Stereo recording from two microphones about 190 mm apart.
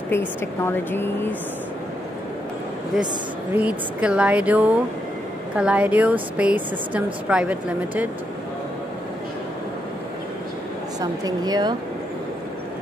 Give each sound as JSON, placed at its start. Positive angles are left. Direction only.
{"t": 0.1, "sound": "speech", "side_deg": 10}
{"t": 3.5, "sound": "speech", "side_deg": -5}
{"t": 11.0, "sound": "speech", "side_deg": -20}